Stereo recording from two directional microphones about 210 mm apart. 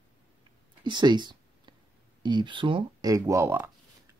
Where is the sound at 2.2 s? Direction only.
20° right (ahead or behind).